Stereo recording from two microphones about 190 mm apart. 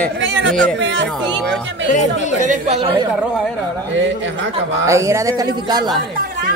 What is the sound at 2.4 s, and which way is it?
Speech, 35° right (ahead or behind).